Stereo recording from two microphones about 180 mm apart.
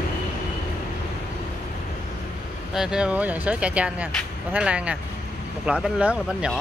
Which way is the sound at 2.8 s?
5° right (ahead or behind).